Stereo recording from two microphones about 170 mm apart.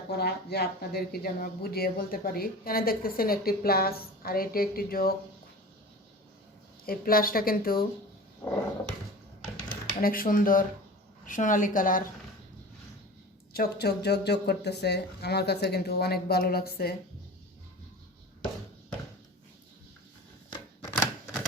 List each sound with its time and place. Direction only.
0.1 s speech: 70° left (ahead or behind)
6.8 s speech: 60° left (ahead or behind)
10.0 s a woman's voice: 55° left (ahead or behind)
13.5 s speech: 65° left (ahead or behind)
20.5 s typewriter: 15° left (ahead or behind)